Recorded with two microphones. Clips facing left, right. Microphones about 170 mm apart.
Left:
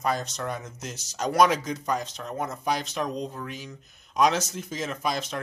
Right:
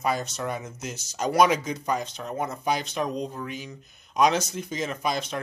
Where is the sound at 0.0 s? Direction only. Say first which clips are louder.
Right 1 dB; 5° right (ahead or behind).